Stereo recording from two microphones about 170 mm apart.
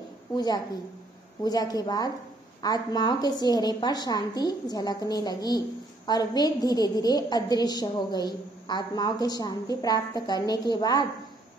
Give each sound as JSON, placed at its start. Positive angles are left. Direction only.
{"t": 1.4, "sound": "a woman's voice", "side_deg": 20}